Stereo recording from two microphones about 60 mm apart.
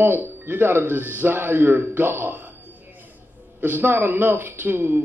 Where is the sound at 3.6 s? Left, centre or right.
Right.